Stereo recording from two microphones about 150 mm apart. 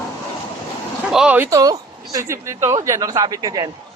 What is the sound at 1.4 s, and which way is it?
A man's voice, 25° right (ahead or behind).